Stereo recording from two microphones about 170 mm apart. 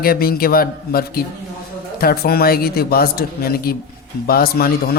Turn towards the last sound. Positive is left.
turn(degrees=60)  # may be behind; listen again after turning